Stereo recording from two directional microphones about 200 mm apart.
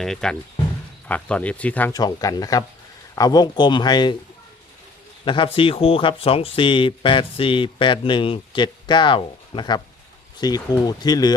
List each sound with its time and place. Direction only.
0.0 s speech: 5° left (ahead or behind)
1.9 s speech: 20° left (ahead or behind)
5.2 s a man's voice: 25° left (ahead or behind)